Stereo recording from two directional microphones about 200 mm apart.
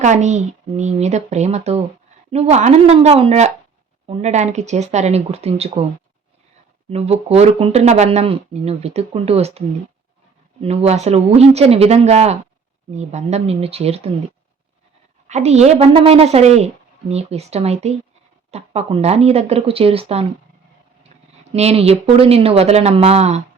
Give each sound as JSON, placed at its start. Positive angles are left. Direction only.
{"t": 0.0, "sound": "speech", "side_deg": -35}
{"t": 6.9, "sound": "speech", "side_deg": -30}
{"t": 15.3, "sound": "speech", "side_deg": -35}
{"t": 21.5, "sound": "speech", "side_deg": -30}